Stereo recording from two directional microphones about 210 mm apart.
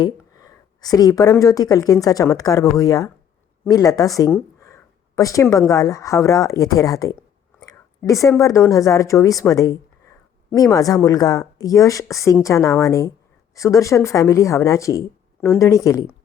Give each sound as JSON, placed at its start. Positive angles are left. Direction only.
{"t": 0.0, "sound": "speech", "side_deg": 15}